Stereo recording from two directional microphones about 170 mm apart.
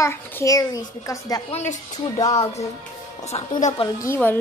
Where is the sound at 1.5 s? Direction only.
45° left (ahead or behind).